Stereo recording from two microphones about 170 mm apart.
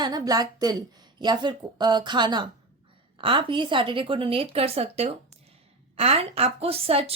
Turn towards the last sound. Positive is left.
turn(degrees=-35)  # may be behind; listen again after turning